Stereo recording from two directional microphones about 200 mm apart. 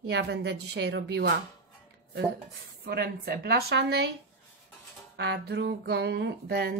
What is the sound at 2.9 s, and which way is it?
Speech, 50° right (ahead or behind).